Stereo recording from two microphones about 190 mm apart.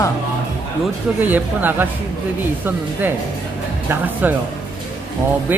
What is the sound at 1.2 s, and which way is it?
Speech, 10° right (ahead or behind).